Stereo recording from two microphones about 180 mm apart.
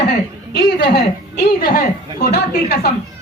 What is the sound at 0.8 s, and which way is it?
A woman's voice, 55° left (ahead or behind).